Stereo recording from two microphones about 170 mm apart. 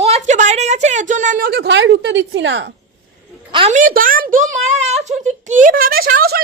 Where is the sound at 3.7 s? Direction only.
55° right (ahead or behind).